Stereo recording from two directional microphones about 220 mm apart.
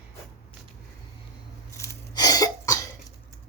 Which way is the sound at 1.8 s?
15° left (ahead or behind).